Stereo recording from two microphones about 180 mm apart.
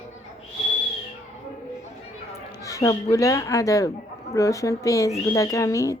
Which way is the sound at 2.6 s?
20° left (ahead or behind).